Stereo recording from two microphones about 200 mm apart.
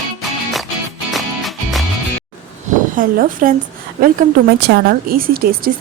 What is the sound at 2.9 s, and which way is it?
Speech, 40° right (ahead or behind).